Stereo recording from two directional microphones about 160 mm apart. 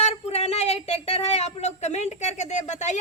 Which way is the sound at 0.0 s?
40° left (ahead or behind).